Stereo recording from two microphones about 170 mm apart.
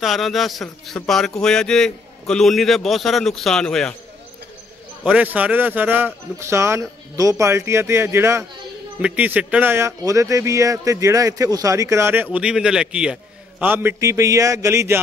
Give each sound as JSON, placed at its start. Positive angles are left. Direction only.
{"t": 0.0, "sound": "a man's voice", "side_deg": 0}
{"t": 5.0, "sound": "speech", "side_deg": -5}